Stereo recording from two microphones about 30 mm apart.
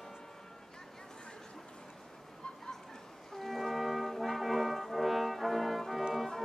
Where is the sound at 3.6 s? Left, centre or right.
Centre.